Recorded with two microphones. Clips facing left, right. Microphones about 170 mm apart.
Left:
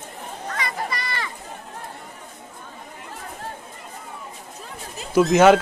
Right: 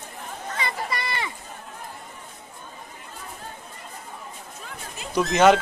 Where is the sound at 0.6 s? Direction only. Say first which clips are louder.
Even; 25° right (ahead or behind).